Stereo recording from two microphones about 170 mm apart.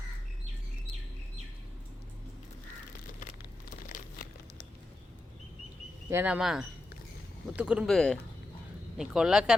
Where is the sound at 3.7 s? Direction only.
50° left (ahead or behind).